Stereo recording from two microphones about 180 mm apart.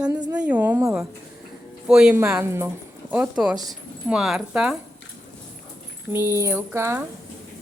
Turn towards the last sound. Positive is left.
turn(degrees=-15)  # may be behind; listen again after turning